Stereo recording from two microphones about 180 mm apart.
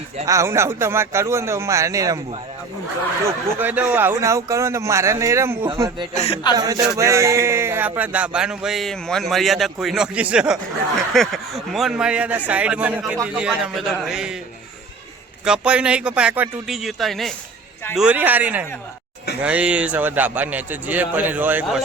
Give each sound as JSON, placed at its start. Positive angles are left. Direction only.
{"t": 0.3, "sound": "speech", "side_deg": -15}
{"t": 3.2, "sound": "speech", "side_deg": -10}
{"t": 6.1, "sound": "speech", "side_deg": 30}
{"t": 6.6, "sound": "a man's voice", "side_deg": -20}
{"t": 15.4, "sound": "a man's voice", "side_deg": -5}